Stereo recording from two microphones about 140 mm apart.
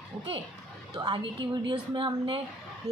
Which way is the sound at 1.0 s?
35° right (ahead or behind).